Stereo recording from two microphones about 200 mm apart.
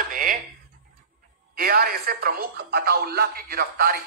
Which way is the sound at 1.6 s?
45° right (ahead or behind).